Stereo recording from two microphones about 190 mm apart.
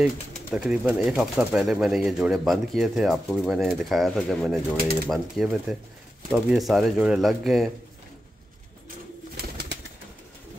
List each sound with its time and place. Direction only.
0.0 s speech: 5° right (ahead or behind)
9.4 s bird: 60° right (ahead or behind)